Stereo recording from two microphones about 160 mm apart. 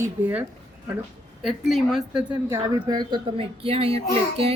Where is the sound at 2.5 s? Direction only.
25° right (ahead or behind).